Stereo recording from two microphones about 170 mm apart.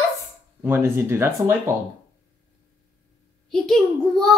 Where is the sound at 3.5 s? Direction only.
Centre (ahead or behind).